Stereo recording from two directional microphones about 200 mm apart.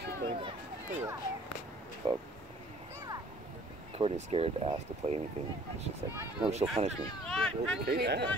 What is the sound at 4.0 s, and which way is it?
Speech, 30° right (ahead or behind).